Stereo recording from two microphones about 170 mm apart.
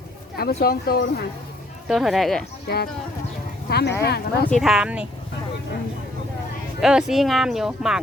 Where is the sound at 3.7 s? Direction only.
70° left (ahead or behind).